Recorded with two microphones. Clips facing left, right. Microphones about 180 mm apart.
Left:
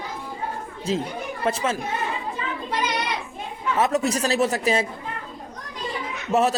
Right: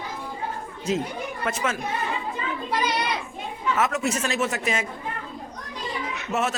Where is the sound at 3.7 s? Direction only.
35° left (ahead or behind).